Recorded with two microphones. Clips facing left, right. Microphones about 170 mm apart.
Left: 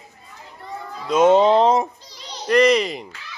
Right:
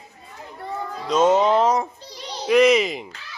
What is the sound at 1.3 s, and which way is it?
Speech, 30° left (ahead or behind).